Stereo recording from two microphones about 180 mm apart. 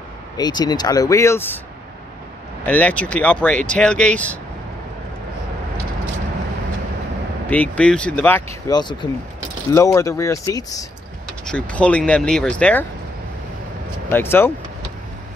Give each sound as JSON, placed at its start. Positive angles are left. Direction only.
{"t": 0.4, "sound": "speech", "side_deg": 25}
{"t": 2.6, "sound": "speech", "side_deg": 10}
{"t": 7.4, "sound": "speech", "side_deg": 10}
{"t": 11.4, "sound": "speech", "side_deg": 5}
{"t": 14.1, "sound": "speech", "side_deg": 10}